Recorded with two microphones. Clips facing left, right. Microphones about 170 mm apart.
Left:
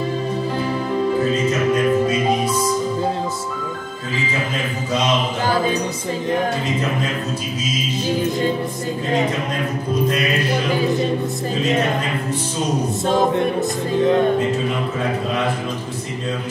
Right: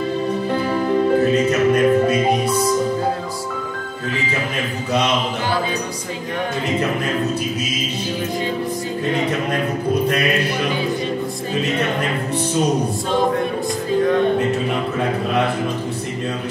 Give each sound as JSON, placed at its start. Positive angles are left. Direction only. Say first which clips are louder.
{"t": 1.7, "sound": "music", "louder": "right 2 dB", "side_deg": -65}